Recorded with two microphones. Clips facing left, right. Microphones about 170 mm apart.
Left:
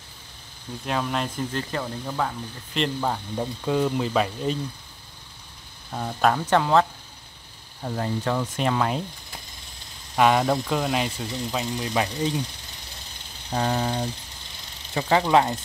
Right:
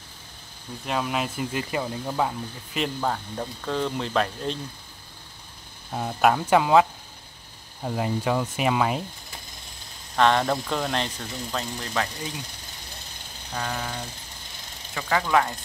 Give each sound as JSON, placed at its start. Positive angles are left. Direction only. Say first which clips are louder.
{"t": 0.8, "sound": "speech", "louder": "even", "side_deg": -5}
{"t": 5.9, "sound": "speech", "louder": "right 1 dB", "side_deg": -10}
{"t": 10.1, "sound": "speech", "louder": "left 1 dB", "side_deg": 10}
{"t": 13.5, "sound": "a sound", "louder": "left 7 dB", "side_deg": 30}
{"t": 15.0, "sound": "speech", "louder": "left 4 dB", "side_deg": 25}